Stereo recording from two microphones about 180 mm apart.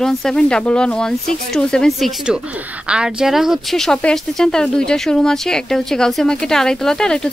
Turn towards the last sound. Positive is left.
turn(degrees=5)  # may be behind; listen again after turning